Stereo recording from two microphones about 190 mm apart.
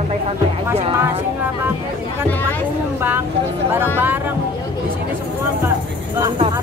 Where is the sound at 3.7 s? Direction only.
10° right (ahead or behind).